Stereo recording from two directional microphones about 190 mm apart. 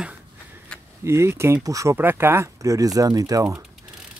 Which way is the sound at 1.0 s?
15° right (ahead or behind).